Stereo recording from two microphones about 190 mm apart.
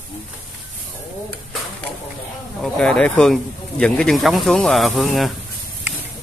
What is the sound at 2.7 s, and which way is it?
Speech, 5° left (ahead or behind).